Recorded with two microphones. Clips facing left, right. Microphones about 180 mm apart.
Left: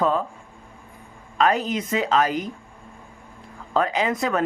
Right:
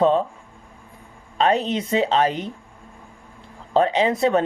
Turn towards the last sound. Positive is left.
turn(degrees=-30)  # may be behind; listen again after turning